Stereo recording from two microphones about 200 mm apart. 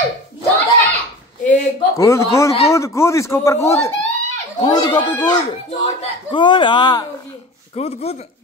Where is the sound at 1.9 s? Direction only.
15° left (ahead or behind).